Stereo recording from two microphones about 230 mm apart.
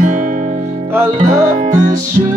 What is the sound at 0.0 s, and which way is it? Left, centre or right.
Music, right.